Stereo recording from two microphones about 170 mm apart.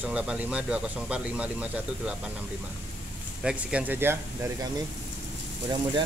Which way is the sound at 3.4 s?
10° right (ahead or behind).